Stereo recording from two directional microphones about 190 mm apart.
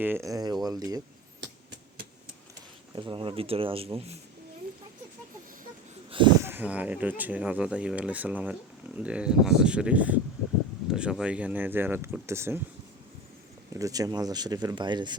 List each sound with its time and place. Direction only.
0.0 s speech: 15° right (ahead or behind)
2.9 s speech: 25° right (ahead or behind)
6.1 s a sound: 25° right (ahead or behind)
6.4 s speech: 10° right (ahead or behind)
13.7 s speech: 20° right (ahead or behind)